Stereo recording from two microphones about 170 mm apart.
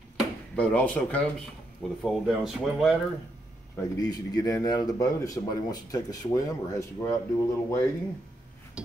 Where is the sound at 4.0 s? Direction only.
25° left (ahead or behind).